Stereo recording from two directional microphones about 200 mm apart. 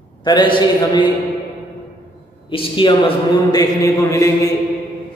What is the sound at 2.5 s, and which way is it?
A man's voice, 25° left (ahead or behind).